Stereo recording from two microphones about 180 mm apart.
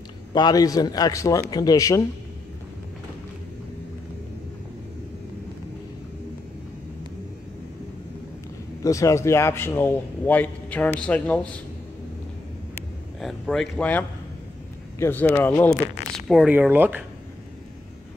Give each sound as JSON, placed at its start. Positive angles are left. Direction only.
{"t": 0.3, "sound": "a man's voice", "side_deg": 20}
{"t": 8.8, "sound": "a man's voice", "side_deg": 20}
{"t": 13.2, "sound": "a man's voice", "side_deg": 5}
{"t": 16.3, "sound": "speech", "side_deg": -5}